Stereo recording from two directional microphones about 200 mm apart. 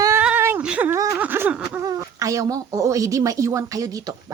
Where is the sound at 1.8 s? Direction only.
15° right (ahead or behind).